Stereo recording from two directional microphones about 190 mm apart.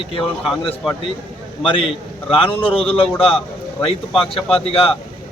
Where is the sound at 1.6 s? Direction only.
30° left (ahead or behind).